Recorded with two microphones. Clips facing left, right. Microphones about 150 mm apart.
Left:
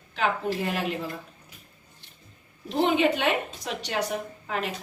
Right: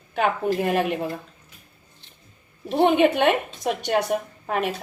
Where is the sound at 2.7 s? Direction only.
60° right (ahead or behind).